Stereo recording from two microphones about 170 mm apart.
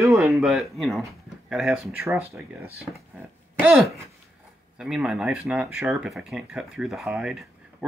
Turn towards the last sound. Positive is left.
turn(degrees=-5)  # may be behind; listen again after turning